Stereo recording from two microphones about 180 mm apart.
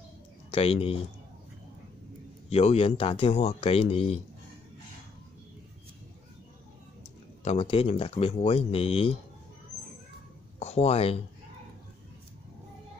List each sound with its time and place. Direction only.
0.5 s speech: 30° left (ahead or behind)
2.5 s speech: 35° left (ahead or behind)
7.4 s speech: 30° left (ahead or behind)
10.6 s speech: 35° left (ahead or behind)